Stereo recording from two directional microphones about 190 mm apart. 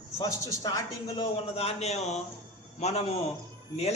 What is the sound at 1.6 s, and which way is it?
A man's voice, 35° left (ahead or behind).